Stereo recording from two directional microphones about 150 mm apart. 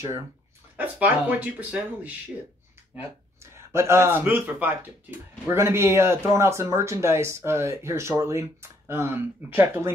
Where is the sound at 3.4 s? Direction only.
20° right (ahead or behind).